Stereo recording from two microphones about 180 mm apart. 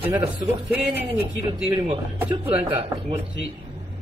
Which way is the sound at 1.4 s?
30° right (ahead or behind).